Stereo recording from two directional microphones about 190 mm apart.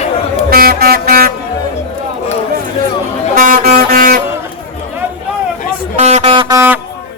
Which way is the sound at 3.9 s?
50° right (ahead or behind).